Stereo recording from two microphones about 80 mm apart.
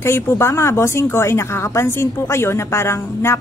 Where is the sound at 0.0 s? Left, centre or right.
Left.